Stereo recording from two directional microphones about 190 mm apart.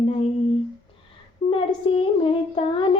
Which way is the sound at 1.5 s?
30° left (ahead or behind).